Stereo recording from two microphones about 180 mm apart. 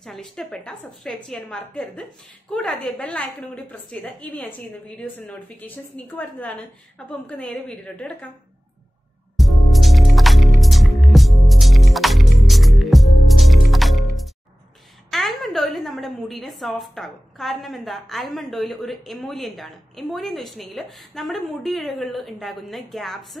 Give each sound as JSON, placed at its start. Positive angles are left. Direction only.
{"t": 0.0, "sound": "a woman's voice", "side_deg": 0}
{"t": 9.4, "sound": "music", "side_deg": 0}
{"t": 15.0, "sound": "a woman's voice", "side_deg": 0}